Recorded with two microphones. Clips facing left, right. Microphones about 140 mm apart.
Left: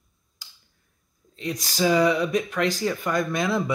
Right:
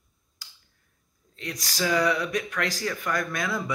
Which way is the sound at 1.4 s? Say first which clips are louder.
Left 5 dB; 20° left (ahead or behind).